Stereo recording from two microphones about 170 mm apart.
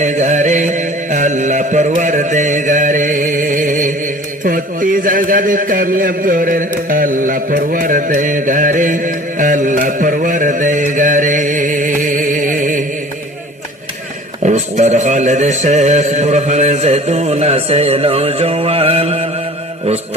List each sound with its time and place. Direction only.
0.0 s mantra: 45° right (ahead or behind)
14.4 s music: 40° right (ahead or behind)